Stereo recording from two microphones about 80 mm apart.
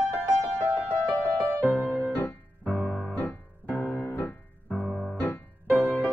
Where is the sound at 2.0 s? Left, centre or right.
Left.